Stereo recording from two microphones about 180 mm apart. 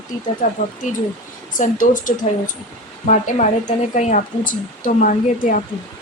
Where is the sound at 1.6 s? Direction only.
45° left (ahead or behind).